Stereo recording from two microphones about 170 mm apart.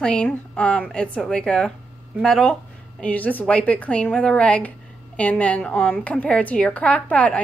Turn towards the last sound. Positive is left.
turn(degrees=10)  # may be behind; listen again after turning